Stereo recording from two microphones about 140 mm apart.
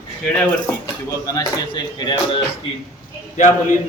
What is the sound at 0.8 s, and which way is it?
Speech, 25° left (ahead or behind).